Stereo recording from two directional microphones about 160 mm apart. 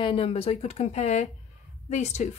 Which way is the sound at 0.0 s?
35° left (ahead or behind).